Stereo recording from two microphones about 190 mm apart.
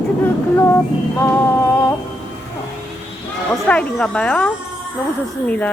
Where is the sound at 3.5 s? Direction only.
5° left (ahead or behind).